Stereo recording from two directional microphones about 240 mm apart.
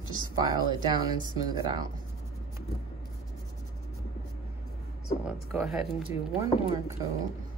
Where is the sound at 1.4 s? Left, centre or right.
Centre.